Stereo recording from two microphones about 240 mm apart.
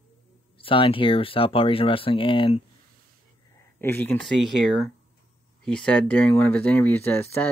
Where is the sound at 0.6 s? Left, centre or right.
Left.